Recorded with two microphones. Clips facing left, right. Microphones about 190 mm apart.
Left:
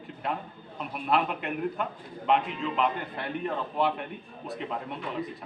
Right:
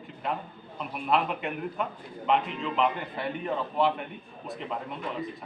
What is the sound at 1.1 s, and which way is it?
A man's voice, centre (ahead or behind).